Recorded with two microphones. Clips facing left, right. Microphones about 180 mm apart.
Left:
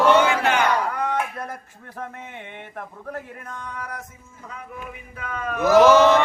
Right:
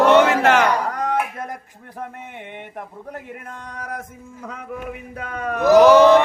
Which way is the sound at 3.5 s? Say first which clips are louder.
Right 1 dB; 35° right (ahead or behind).